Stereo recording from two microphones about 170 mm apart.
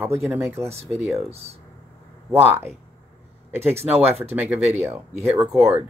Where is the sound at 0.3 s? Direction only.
15° right (ahead or behind).